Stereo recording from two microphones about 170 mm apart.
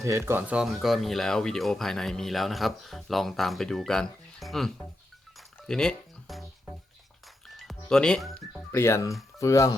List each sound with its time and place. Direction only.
0.0 s speech: 15° right (ahead or behind); by 6.4 s centre (ahead or behind)
7.4 s music: centre (ahead or behind)
8.7 s speech: 15° left (ahead or behind)